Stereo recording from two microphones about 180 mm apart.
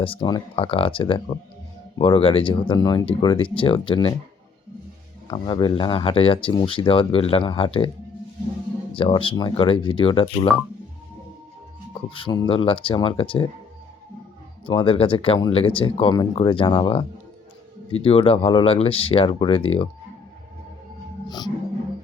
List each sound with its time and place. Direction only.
0.0 s speech: 25° left (ahead or behind)
5.3 s speech: 25° left (ahead or behind)
8.9 s speech: 30° left (ahead or behind)
11.9 s speech: 30° left (ahead or behind)
14.7 s speech: 30° left (ahead or behind)
21.2 s music: 25° left (ahead or behind)